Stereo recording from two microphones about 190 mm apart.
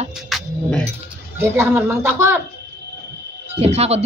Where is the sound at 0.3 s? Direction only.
5° left (ahead or behind).